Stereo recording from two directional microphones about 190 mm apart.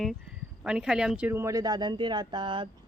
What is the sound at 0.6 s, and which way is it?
Speech, 5° right (ahead or behind).